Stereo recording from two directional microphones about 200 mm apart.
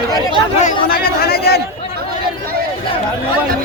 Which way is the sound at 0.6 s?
50° left (ahead or behind).